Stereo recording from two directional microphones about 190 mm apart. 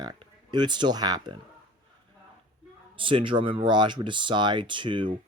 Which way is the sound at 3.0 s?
25° right (ahead or behind).